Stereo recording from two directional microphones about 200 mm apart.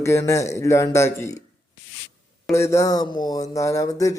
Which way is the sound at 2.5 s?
15° left (ahead or behind).